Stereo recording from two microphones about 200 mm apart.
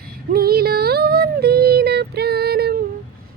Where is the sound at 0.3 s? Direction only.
50° right (ahead or behind).